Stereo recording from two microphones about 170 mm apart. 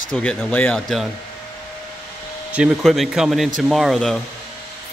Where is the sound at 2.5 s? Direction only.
5° right (ahead or behind).